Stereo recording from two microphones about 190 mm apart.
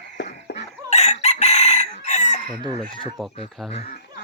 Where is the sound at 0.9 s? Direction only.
35° left (ahead or behind).